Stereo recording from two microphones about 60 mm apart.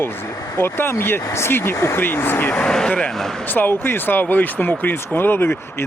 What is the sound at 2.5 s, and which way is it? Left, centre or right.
Speech, centre.